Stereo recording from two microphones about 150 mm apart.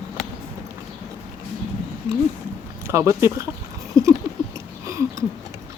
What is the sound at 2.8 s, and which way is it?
Speech, 20° right (ahead or behind).